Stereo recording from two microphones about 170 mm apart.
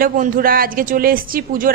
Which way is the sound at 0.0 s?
55° right (ahead or behind).